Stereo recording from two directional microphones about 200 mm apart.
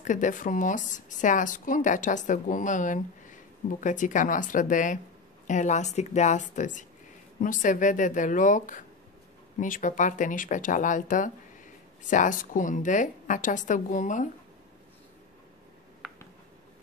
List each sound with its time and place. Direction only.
0.0 s speech: 40° left (ahead or behind)